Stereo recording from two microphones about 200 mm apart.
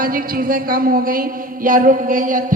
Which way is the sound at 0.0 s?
45° right (ahead or behind).